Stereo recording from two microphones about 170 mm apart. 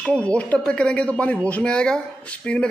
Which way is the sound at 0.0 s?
5° left (ahead or behind).